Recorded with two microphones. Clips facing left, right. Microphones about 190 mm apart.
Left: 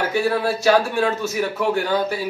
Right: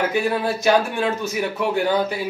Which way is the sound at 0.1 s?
20° right (ahead or behind).